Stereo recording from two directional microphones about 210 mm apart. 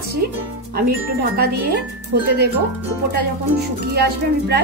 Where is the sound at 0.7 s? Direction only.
45° right (ahead or behind).